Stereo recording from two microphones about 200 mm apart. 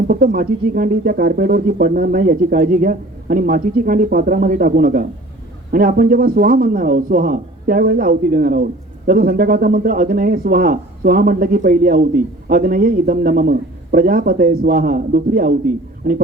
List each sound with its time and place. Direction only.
0.1 s a man's voice: 50° right (ahead or behind)